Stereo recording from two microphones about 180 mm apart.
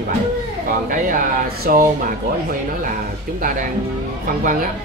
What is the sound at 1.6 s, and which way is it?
Speech, 55° right (ahead or behind).